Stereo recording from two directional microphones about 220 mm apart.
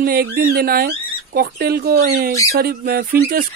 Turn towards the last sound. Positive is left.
turn(degrees=-40)  # may be behind; listen again after turning